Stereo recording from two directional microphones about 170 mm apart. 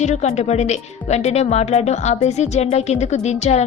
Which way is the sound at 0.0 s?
40° left (ahead or behind).